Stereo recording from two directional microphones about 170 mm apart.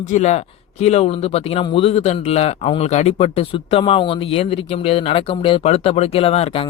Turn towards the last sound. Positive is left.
turn(degrees=35)  # may be behind; listen again after turning